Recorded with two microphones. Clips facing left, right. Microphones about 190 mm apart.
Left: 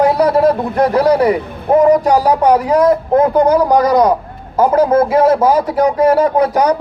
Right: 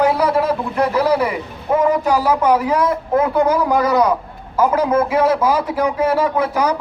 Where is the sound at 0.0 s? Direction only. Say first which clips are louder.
Left 5 dB; 35° left (ahead or behind).